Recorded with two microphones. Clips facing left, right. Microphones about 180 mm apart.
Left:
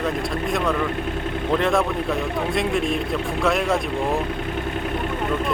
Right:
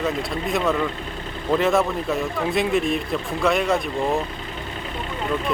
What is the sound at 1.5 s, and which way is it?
Speech, 5° right (ahead or behind).